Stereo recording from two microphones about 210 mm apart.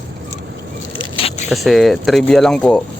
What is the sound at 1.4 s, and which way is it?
Speech, centre (ahead or behind).